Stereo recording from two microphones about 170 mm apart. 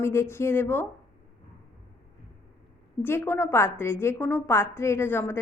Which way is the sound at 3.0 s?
10° left (ahead or behind).